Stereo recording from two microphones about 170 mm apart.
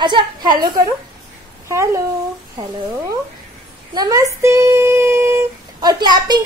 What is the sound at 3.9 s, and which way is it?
Speech, 20° right (ahead or behind).